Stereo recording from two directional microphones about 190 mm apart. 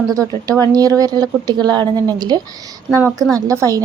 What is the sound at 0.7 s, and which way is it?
A woman's voice, 20° right (ahead or behind).